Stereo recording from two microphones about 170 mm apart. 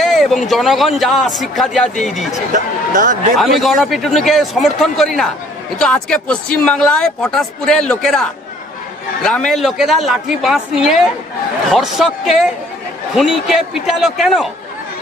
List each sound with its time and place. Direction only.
0.0 s speech: centre (ahead or behind)
2.5 s speech: 50° right (ahead or behind)
3.3 s speech: centre (ahead or behind)